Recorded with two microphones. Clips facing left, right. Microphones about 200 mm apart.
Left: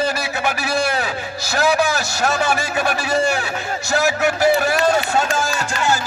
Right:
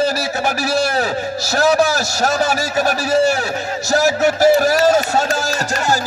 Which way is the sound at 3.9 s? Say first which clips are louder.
Right 4 dB; 40° right (ahead or behind).